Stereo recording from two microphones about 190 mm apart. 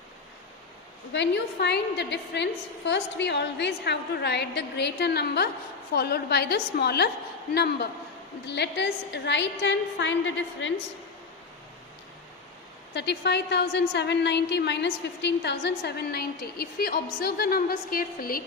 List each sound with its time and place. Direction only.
1.1 s a woman's voice: 65° left (ahead or behind)
12.9 s a woman's voice: 65° left (ahead or behind); by 18.4 s 50° left (ahead or behind)